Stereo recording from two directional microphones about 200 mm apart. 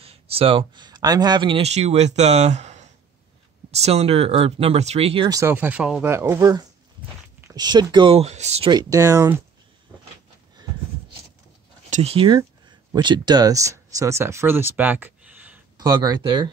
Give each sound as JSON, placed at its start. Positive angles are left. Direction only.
{"t": 0.0, "sound": "speech", "side_deg": -30}
{"t": 5.4, "sound": "speech", "side_deg": -10}
{"t": 11.9, "sound": "speech", "side_deg": -30}
{"t": 15.8, "sound": "speech", "side_deg": -20}